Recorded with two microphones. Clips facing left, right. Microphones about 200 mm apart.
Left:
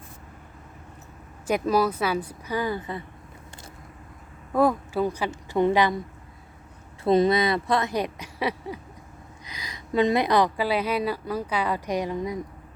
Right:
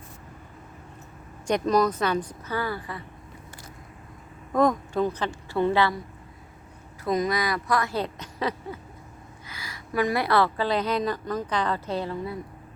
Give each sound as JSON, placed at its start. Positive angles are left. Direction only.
{"t": 1.5, "sound": "a woman's voice", "side_deg": 5}
{"t": 4.5, "sound": "a woman's voice", "side_deg": 5}
{"t": 7.0, "sound": "a woman's voice", "side_deg": 30}